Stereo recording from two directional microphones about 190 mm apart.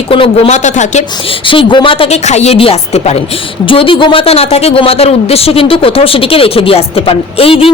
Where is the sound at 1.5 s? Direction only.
25° left (ahead or behind).